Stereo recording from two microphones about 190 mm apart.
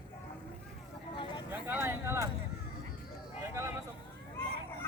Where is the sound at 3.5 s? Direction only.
15° right (ahead or behind).